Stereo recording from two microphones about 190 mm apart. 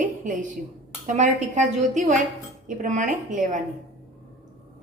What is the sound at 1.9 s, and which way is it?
Speech, 40° right (ahead or behind).